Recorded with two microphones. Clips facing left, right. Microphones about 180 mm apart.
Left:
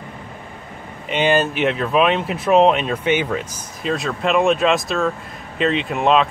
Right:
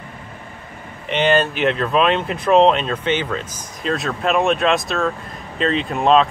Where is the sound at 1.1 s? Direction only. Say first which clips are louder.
Even; 10° left (ahead or behind).